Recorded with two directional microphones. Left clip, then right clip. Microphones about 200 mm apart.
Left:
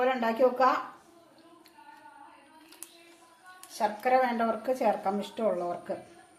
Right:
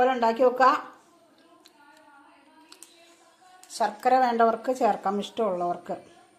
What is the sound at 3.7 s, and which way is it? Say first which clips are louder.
Speech: right 4 dB; 35° right (ahead or behind).